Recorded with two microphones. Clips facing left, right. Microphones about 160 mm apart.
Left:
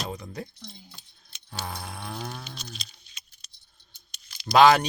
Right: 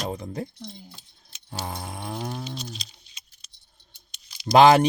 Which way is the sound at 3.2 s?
30° right (ahead or behind).